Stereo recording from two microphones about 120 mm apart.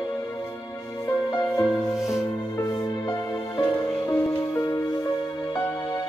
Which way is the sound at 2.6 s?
30° left (ahead or behind).